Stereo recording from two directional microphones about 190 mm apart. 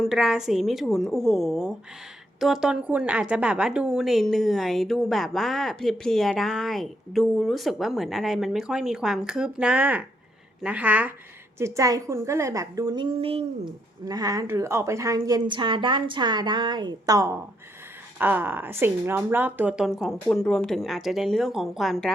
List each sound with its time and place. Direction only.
0.0 s a woman's voice: centre (ahead or behind)